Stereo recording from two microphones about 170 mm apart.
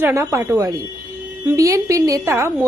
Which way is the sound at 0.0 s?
15° right (ahead or behind).